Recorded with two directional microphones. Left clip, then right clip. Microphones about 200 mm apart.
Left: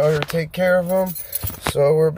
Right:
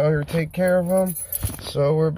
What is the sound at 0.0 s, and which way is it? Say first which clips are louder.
Speech: left 3 dB; 5° left (ahead or behind).